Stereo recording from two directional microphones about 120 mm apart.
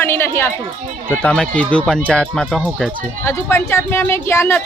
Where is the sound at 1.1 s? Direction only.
10° left (ahead or behind).